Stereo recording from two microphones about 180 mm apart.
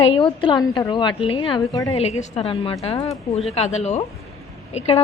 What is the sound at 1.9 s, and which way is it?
A woman's voice, 35° left (ahead or behind).